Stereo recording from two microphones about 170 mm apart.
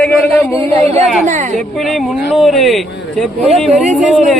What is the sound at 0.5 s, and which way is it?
Speech, 40° right (ahead or behind).